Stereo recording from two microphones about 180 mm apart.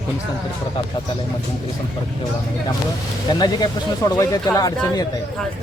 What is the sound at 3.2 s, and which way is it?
Speech, 20° left (ahead or behind).